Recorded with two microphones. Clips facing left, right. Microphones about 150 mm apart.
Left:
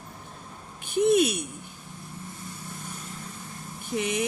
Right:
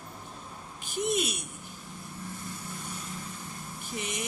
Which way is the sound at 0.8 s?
60° left (ahead or behind).